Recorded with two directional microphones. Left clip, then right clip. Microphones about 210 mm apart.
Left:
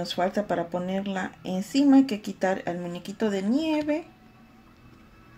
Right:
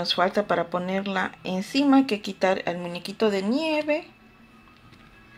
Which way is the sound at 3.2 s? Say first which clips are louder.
Right 3 dB; 20° left (ahead or behind).